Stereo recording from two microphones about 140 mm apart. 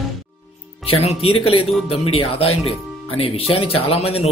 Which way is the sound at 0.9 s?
45° left (ahead or behind).